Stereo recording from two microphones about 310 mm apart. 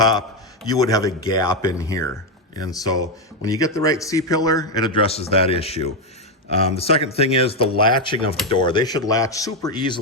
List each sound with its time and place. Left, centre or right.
0.0 s speech: centre
3.4 s speech: centre